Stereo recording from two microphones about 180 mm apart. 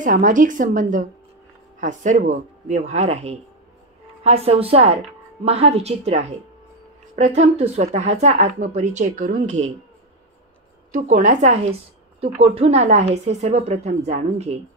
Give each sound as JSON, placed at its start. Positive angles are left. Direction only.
{"t": 0.0, "sound": "speech", "side_deg": -45}
{"t": 10.9, "sound": "speech", "side_deg": -50}